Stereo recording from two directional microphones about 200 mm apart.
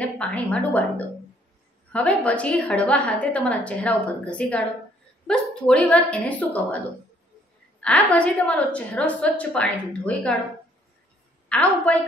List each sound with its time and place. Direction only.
0.0 s a woman's voice: 5° left (ahead or behind)
7.8 s a woman's voice: 5° left (ahead or behind)
11.4 s a woman's voice: 5° left (ahead or behind)